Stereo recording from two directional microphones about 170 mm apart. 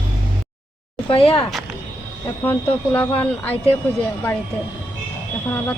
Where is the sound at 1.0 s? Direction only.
30° left (ahead or behind).